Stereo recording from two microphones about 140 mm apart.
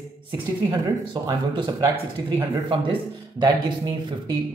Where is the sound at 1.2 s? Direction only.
30° right (ahead or behind).